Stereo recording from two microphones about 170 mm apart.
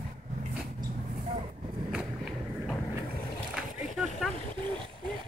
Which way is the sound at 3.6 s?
Centre (ahead or behind).